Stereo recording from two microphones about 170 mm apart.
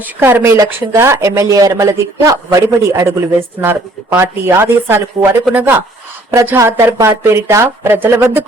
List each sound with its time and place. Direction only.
0.0 s speech: 10° right (ahead or behind)